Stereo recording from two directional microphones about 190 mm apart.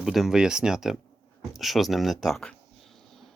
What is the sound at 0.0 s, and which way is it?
Speech, centre (ahead or behind).